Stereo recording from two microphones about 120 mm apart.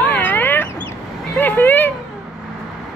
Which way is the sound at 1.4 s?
15° left (ahead or behind).